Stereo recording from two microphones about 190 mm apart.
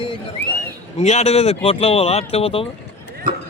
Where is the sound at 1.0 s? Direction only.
35° left (ahead or behind).